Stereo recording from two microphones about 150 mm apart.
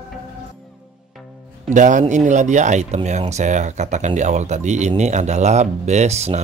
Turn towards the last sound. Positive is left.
turn(degrees=-45)  # may be behind; listen again after turning